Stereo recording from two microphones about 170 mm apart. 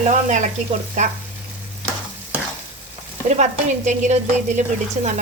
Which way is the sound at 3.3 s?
45° right (ahead or behind).